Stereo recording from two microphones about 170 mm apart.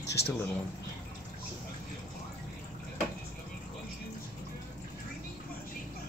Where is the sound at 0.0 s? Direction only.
75° left (ahead or behind).